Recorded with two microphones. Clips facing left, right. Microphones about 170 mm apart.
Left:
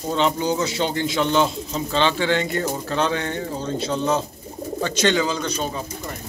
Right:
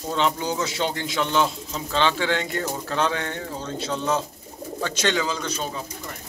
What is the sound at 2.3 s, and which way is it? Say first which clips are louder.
Speech: left 4 dB; 5° left (ahead or behind).